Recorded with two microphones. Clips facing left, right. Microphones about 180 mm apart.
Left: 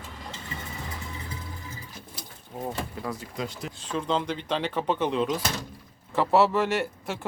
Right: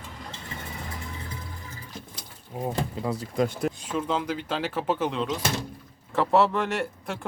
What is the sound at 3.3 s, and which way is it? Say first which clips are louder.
Speech: right 9 dB; 55° right (ahead or behind).